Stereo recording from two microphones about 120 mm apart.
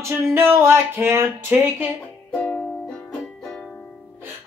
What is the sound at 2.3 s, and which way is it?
Music, 10° left (ahead or behind).